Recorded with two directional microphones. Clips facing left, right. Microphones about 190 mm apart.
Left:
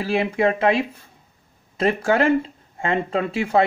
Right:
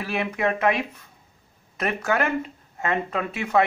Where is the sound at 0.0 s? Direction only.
30° left (ahead or behind).